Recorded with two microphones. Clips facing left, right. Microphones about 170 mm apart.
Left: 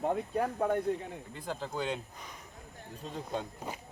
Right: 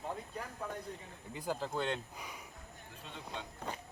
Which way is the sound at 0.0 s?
60° left (ahead or behind).